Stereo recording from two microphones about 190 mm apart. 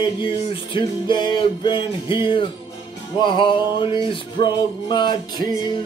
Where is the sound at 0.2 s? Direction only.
25° left (ahead or behind).